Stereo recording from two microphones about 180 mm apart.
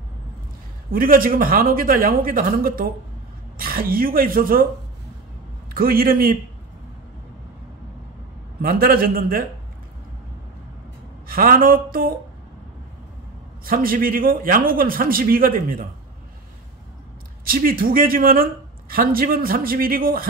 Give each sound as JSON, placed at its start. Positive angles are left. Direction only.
{"t": 0.9, "sound": "speech", "side_deg": -55}
{"t": 5.8, "sound": "a man's voice", "side_deg": -55}
{"t": 8.6, "sound": "a man's voice", "side_deg": -55}
{"t": 11.2, "sound": "speech", "side_deg": -55}
{"t": 13.7, "sound": "speech", "side_deg": -55}
{"t": 17.5, "sound": "speech", "side_deg": -55}